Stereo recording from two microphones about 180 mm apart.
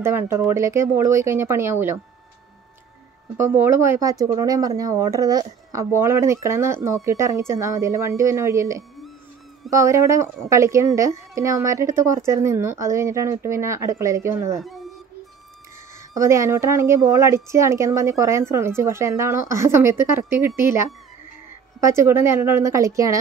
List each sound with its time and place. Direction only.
0.0 s speech: 15° right (ahead or behind)
3.3 s speech: 10° right (ahead or behind)
14.6 s a sound: centre (ahead or behind)
16.2 s speech: 15° right (ahead or behind)